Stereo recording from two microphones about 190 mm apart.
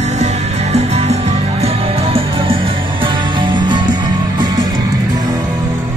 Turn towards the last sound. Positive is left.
turn(degrees=-20)  # may be behind; listen again after turning